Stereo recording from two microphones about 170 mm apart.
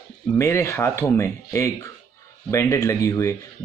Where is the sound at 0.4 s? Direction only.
15° left (ahead or behind).